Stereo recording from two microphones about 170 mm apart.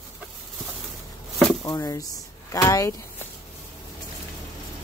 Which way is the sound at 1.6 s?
20° left (ahead or behind).